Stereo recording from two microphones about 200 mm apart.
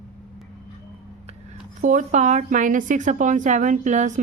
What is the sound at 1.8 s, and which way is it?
Speech, 40° right (ahead or behind).